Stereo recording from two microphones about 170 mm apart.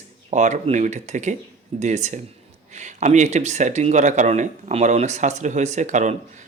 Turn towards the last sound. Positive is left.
turn(degrees=-45)  # may be behind; listen again after turning